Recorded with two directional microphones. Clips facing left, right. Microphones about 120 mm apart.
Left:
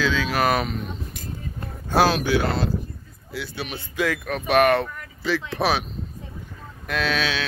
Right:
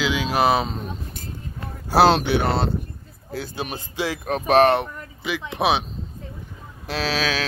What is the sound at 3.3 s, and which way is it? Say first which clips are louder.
Speech: right 2 dB; 45° right (ahead or behind).